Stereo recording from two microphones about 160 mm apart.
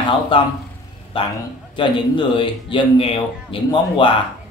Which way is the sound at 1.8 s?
30° left (ahead or behind).